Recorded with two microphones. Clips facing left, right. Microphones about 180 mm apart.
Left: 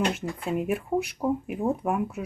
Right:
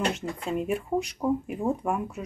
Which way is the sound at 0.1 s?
5° left (ahead or behind).